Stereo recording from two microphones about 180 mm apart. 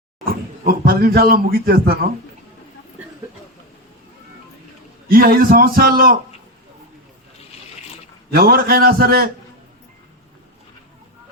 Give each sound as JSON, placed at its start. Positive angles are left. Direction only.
{"t": 0.3, "sound": "speech", "side_deg": -55}
{"t": 5.0, "sound": "a man's voice", "side_deg": -55}
{"t": 8.3, "sound": "a man's voice", "side_deg": -60}